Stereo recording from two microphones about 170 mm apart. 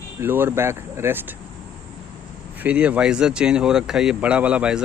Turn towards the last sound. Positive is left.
turn(degrees=-5)  # may be behind; listen again after turning